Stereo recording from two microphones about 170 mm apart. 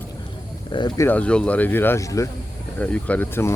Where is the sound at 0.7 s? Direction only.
25° left (ahead or behind).